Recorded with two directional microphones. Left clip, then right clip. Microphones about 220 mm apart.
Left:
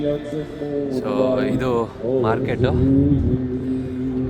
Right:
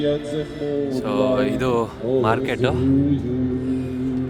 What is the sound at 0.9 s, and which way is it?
Speech, 5° right (ahead or behind).